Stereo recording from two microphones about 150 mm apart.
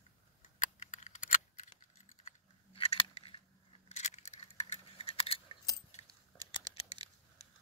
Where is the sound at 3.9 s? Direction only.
50° left (ahead or behind).